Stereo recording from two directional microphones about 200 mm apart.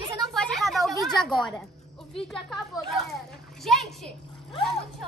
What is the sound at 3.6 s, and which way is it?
Speech, centre (ahead or behind).